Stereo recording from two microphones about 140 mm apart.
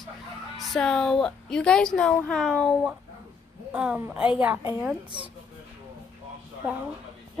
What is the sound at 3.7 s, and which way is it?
A woman's voice, 10° right (ahead or behind).